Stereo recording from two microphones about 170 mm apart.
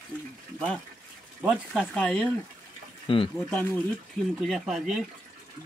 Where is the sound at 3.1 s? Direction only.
30° left (ahead or behind).